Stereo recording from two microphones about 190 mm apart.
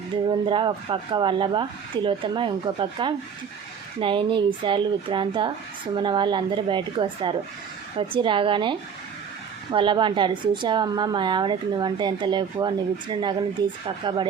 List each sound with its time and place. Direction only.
0.4 s a woman's voice: 25° right (ahead or behind)
9.7 s a woman's voice: 25° right (ahead or behind)